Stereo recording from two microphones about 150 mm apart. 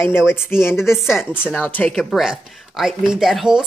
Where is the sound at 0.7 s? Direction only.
5° right (ahead or behind).